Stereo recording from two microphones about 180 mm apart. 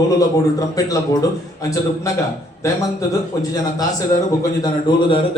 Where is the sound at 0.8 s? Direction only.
20° left (ahead or behind).